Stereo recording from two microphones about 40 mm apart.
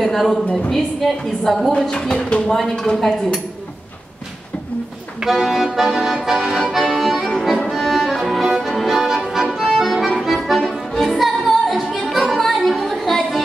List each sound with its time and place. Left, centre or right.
0.0 s a woman's voice: centre
1.9 s speech: centre
2.4 s a woman's voice: centre
5.2 s accordion: centre
7.3 s music: centre
9.8 s accordion: centre